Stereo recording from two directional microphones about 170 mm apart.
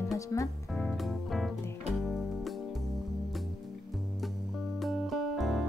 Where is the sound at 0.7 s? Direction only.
Centre (ahead or behind).